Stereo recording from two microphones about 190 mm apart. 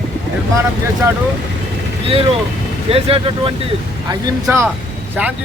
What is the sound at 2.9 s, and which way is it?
Speech, 30° right (ahead or behind).